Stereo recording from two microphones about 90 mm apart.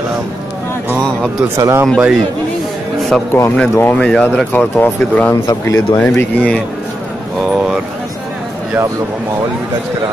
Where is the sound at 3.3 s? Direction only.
35° left (ahead or behind).